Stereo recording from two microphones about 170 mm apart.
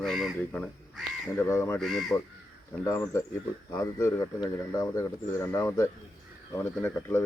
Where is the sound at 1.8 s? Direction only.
Centre (ahead or behind).